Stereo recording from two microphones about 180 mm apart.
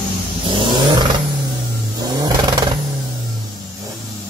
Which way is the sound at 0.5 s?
25° right (ahead or behind).